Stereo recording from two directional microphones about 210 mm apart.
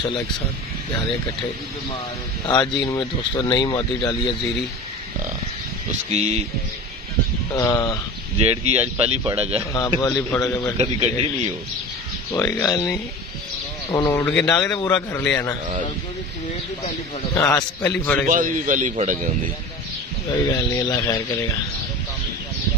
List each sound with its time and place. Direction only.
2.4 s speech: 20° left (ahead or behind)
6.1 s speech: 30° right (ahead or behind)
7.5 s a man's voice: 15° left (ahead or behind)
8.4 s speech: 30° right (ahead or behind)
9.8 s a man's voice: 15° left (ahead or behind)
10.8 s speech: 30° right (ahead or behind)
12.3 s a man's voice: 15° left (ahead or behind)
14.8 s a man's voice: 15° left (ahead or behind)
17.3 s a man's voice: 15° left (ahead or behind)
18.2 s speech: 40° right (ahead or behind)
20.7 s speech: 20° left (ahead or behind)